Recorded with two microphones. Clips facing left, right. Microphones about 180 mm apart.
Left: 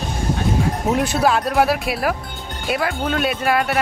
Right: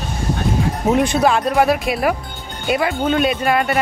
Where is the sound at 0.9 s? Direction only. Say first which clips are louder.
Right 3 dB; 5° left (ahead or behind).